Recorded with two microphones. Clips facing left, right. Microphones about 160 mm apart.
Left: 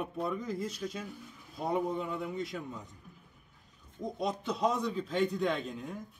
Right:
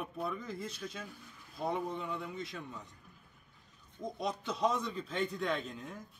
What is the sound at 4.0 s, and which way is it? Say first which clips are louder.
Speech: left 3 dB; centre (ahead or behind).